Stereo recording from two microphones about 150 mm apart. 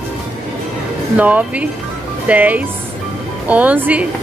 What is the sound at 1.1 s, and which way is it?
Speech, 10° right (ahead or behind).